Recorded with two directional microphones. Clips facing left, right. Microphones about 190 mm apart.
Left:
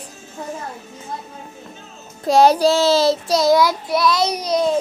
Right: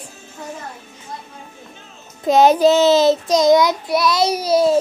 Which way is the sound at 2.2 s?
20° right (ahead or behind).